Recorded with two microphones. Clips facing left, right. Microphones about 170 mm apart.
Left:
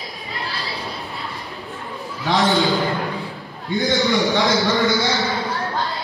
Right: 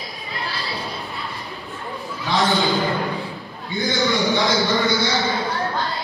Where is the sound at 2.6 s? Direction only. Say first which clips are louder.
Left 1 dB; centre (ahead or behind).